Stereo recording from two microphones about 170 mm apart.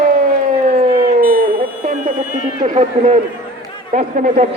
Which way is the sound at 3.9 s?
50° right (ahead or behind).